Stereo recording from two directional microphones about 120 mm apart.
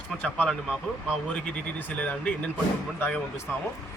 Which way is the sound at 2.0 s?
15° left (ahead or behind).